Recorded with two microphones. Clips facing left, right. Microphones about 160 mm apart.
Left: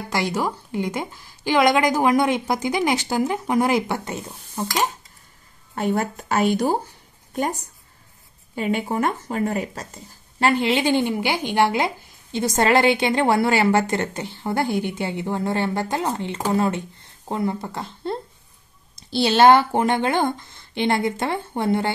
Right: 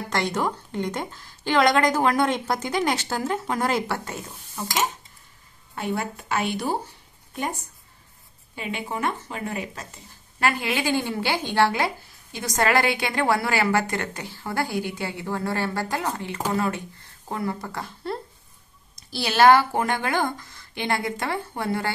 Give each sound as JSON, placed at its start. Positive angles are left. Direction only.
{"t": 0.1, "sound": "a woman's voice", "side_deg": 10}
{"t": 5.8, "sound": "speech", "side_deg": 45}
{"t": 8.5, "sound": "a woman's voice", "side_deg": 40}
{"t": 10.4, "sound": "speech", "side_deg": 25}